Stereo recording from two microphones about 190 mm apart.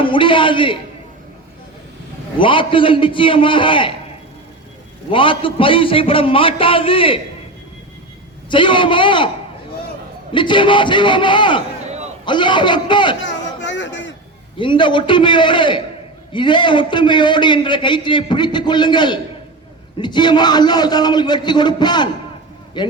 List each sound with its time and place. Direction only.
0.0 s a man's voice: 25° left (ahead or behind)
2.4 s a man's voice: 25° left (ahead or behind)
5.1 s a man's voice: 25° left (ahead or behind)
8.4 s a man's voice: 25° left (ahead or behind)
10.3 s a man's voice: 25° left (ahead or behind)
11.9 s a sound: 35° right (ahead or behind)
12.2 s a man's voice: 25° left (ahead or behind)
13.2 s a sound: 70° left (ahead or behind)
14.6 s a man's voice: 25° left (ahead or behind)